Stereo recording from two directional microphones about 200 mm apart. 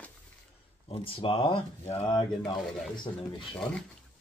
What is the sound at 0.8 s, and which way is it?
Speech, 25° left (ahead or behind).